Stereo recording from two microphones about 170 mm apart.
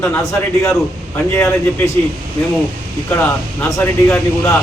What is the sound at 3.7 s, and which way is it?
Speech, 10° left (ahead or behind).